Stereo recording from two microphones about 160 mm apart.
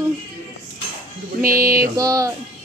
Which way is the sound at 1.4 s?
65° right (ahead or behind).